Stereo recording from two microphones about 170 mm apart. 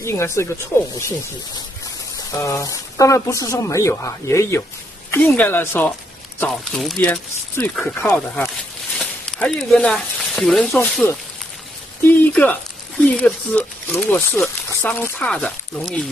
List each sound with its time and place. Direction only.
0.0 s speech: 15° left (ahead or behind)
2.4 s speech: 20° left (ahead or behind)
6.4 s speech: centre (ahead or behind)